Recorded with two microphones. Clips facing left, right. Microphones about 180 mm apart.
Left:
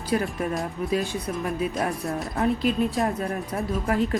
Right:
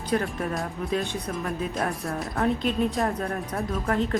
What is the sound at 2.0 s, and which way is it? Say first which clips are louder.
Speech: left 2 dB; 20° left (ahead or behind).